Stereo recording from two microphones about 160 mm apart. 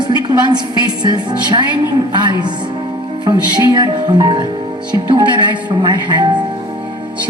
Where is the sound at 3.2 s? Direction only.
25° right (ahead or behind).